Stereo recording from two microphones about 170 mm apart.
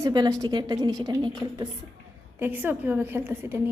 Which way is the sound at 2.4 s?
10° right (ahead or behind).